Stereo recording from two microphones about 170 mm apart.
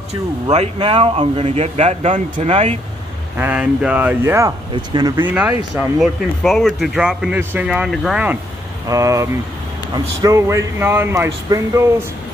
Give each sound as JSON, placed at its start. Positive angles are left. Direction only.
{"t": 0.1, "sound": "speech", "side_deg": -40}
{"t": 3.3, "sound": "speech", "side_deg": -10}
{"t": 5.2, "sound": "speech", "side_deg": -10}
{"t": 5.8, "sound": "a man's voice", "side_deg": 0}
{"t": 8.8, "sound": "speech", "side_deg": -20}